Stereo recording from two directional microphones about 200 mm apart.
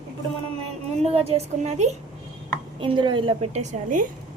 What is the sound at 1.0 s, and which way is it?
A woman's voice, 30° right (ahead or behind).